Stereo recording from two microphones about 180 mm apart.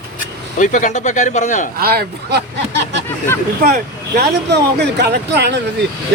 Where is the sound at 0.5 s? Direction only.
45° left (ahead or behind).